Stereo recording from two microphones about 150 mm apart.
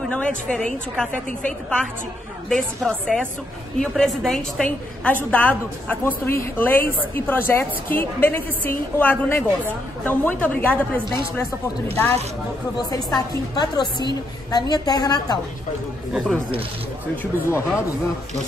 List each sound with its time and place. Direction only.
0.1 s a woman's voice: 5° left (ahead or behind)
12.7 s a woman's voice: 25° left (ahead or behind)
17.2 s a woman's voice: 15° left (ahead or behind)